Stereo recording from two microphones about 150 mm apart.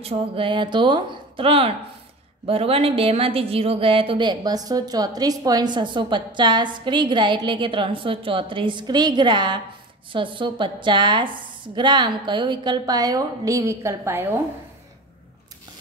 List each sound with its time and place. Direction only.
0.0 s a woman's voice: 40° right (ahead or behind); by 14.2 s 20° right (ahead or behind)